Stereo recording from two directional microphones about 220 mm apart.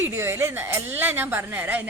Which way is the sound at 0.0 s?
10° right (ahead or behind).